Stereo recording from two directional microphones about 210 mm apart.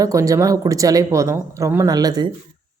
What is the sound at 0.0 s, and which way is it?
Speech, 15° right (ahead or behind).